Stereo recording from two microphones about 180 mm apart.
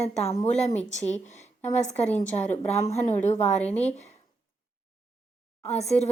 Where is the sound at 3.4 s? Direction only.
10° left (ahead or behind).